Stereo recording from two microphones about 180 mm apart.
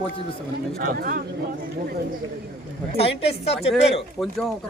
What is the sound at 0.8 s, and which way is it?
Speech, 55° right (ahead or behind).